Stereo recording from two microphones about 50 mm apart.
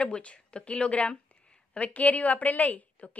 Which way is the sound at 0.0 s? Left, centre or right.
Left.